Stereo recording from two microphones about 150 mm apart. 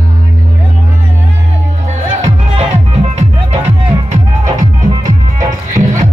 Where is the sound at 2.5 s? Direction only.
45° right (ahead or behind).